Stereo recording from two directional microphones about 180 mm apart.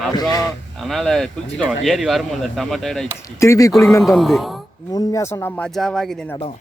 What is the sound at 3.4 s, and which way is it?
Speech, 15° left (ahead or behind).